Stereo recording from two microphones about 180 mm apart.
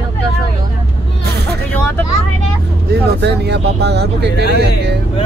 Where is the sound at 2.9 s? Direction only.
65° right (ahead or behind).